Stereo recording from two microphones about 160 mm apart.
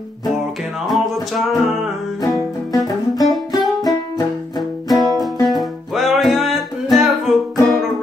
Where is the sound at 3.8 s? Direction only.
25° left (ahead or behind).